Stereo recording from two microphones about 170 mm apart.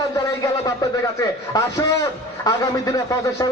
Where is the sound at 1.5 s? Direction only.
20° left (ahead or behind).